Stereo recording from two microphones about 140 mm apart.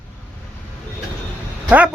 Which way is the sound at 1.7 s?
10° right (ahead or behind).